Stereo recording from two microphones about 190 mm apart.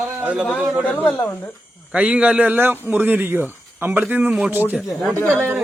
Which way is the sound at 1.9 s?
5° right (ahead or behind).